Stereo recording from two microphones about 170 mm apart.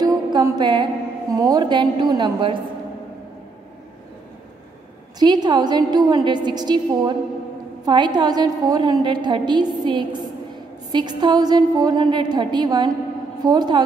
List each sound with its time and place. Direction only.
0.0 s music: 20° right (ahead or behind)
1.3 s a woman's voice: 20° right (ahead or behind)
5.2 s a woman's voice: 25° right (ahead or behind)